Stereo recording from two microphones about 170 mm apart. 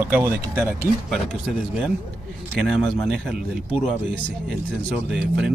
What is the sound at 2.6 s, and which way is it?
Speech, 5° right (ahead or behind).